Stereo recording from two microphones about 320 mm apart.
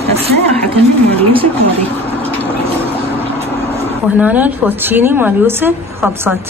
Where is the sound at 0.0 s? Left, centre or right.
Centre.